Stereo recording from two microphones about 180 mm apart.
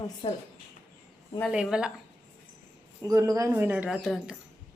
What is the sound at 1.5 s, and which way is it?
Speech, 5° right (ahead or behind).